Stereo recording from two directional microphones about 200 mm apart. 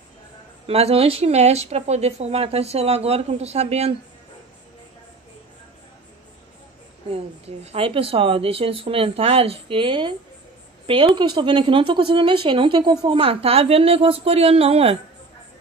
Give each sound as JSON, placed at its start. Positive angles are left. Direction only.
{"t": 0.7, "sound": "speech", "side_deg": -30}
{"t": 7.1, "sound": "a woman's voice", "side_deg": -30}